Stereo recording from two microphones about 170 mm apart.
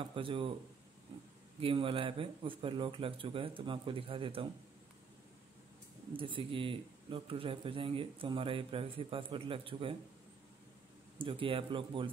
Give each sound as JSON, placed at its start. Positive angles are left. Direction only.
{"t": 0.0, "sound": "speech", "side_deg": -30}
{"t": 1.6, "sound": "speech", "side_deg": -30}
{"t": 6.1, "sound": "speech", "side_deg": -30}
{"t": 11.1, "sound": "speech", "side_deg": -30}